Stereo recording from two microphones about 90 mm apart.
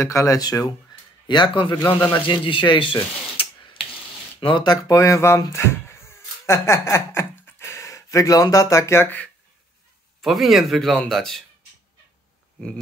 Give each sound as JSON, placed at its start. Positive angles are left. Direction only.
{"t": 0.0, "sound": "speech", "side_deg": 35}
{"t": 1.2, "sound": "speech", "side_deg": 60}
{"t": 4.4, "sound": "speech", "side_deg": 70}
{"t": 4.8, "sound": "speech", "side_deg": 35}
{"t": 5.5, "sound": "a sound", "side_deg": 30}
{"t": 10.2, "sound": "speech", "side_deg": 0}